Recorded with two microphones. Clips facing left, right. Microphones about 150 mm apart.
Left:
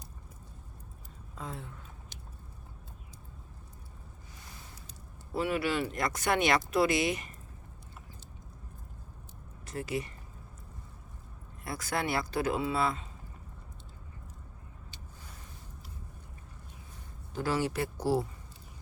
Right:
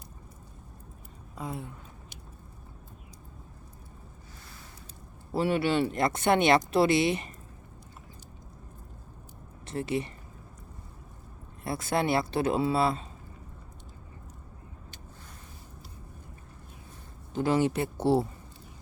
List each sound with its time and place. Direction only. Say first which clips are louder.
1.4 s speech: right 5 dB; 15° right (ahead or behind)
5.3 s speech: right 4 dB; 30° right (ahead or behind)
9.6 s speech: right 4 dB; 25° right (ahead or behind)
11.6 s speech: right 5 dB; 25° right (ahead or behind)
17.3 s speech: right 5 dB; 20° right (ahead or behind)